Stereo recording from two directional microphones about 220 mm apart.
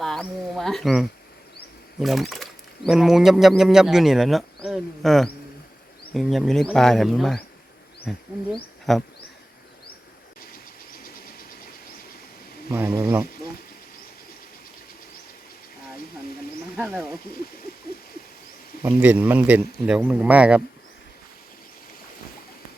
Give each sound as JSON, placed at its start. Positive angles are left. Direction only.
{"t": 0.0, "sound": "speech", "side_deg": 0}
{"t": 10.9, "sound": "train", "side_deg": 40}
{"t": 12.7, "sound": "speech", "side_deg": -10}
{"t": 16.7, "sound": "speech", "side_deg": 0}
{"t": 18.8, "sound": "speech", "side_deg": -10}